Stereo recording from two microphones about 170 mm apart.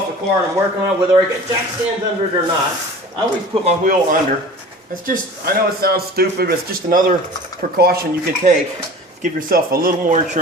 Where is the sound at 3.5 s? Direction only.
35° right (ahead or behind).